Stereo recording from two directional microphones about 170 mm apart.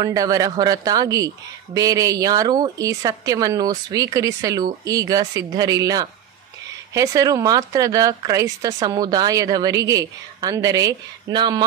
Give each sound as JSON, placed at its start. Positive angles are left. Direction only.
{"t": 0.0, "sound": "speech", "side_deg": -20}